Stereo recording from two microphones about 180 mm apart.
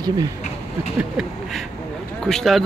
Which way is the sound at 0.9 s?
Centre (ahead or behind).